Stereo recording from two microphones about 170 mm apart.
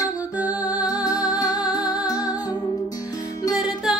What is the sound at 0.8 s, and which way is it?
Music, 20° left (ahead or behind).